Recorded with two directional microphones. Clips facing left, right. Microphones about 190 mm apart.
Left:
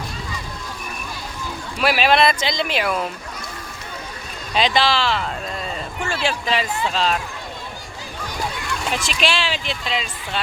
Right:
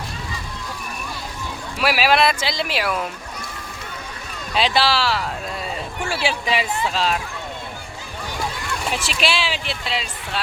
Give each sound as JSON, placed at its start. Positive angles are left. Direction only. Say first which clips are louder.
{"t": 1.8, "sound": "speech", "louder": "left 1 dB", "side_deg": -5}
{"t": 4.5, "sound": "speech", "louder": "left 1 dB", "side_deg": -5}
{"t": 8.9, "sound": "speech", "louder": "left 1 dB", "side_deg": -10}